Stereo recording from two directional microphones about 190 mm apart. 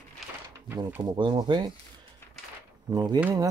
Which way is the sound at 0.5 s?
15° right (ahead or behind).